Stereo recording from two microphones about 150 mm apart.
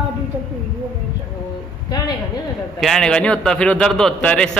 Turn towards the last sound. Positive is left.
turn(degrees=5)  # may be behind; listen again after turning